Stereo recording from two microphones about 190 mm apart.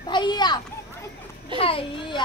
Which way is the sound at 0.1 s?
25° left (ahead or behind).